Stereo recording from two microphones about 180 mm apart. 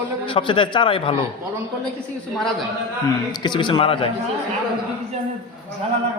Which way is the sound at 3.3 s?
25° left (ahead or behind).